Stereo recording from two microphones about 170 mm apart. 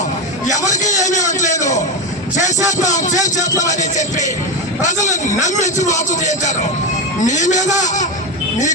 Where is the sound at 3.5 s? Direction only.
20° left (ahead or behind).